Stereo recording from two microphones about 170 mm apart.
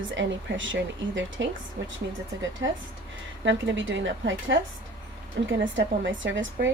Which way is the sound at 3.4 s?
90° right.